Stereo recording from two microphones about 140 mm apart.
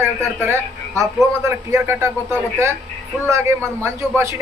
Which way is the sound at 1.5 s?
20° right (ahead or behind).